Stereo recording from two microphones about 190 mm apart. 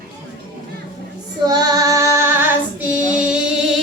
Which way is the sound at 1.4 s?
20° right (ahead or behind).